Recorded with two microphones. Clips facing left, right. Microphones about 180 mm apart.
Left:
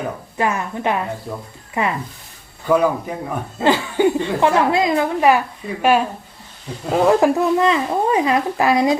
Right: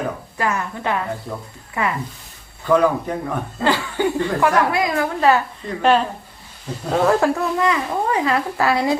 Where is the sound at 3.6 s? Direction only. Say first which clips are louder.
Left 4 dB; 20° left (ahead or behind).